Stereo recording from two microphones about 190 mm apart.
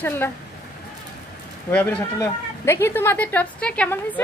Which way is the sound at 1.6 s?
10° left (ahead or behind).